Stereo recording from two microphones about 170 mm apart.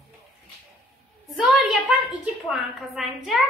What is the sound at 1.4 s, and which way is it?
A woman's voice, 5° right (ahead or behind).